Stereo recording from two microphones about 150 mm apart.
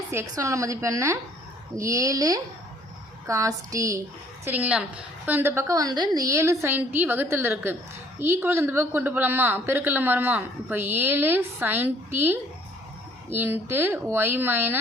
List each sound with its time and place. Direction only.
0.1 s a woman's voice: 20° right (ahead or behind)